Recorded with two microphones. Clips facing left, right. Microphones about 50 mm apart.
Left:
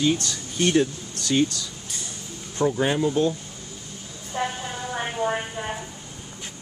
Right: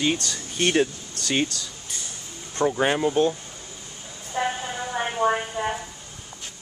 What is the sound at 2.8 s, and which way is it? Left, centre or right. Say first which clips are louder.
Speech: right 2 dB; right.